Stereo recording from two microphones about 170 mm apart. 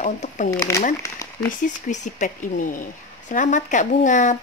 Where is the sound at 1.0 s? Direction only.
20° left (ahead or behind).